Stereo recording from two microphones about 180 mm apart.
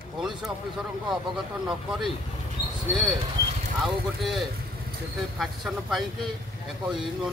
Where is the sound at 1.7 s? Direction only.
Centre (ahead or behind).